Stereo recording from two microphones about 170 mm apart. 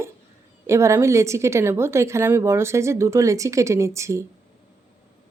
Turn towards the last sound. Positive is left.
turn(degrees=-15)  # may be behind; listen again after turning